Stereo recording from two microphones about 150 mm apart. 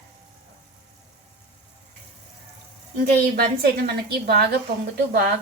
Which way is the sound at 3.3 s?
90° right.